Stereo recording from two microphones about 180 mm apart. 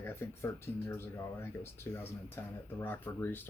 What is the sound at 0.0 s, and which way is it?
Speech, 15° left (ahead or behind).